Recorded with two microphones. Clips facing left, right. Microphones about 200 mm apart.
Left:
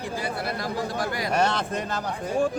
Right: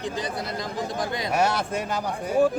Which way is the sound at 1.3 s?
10° right (ahead or behind).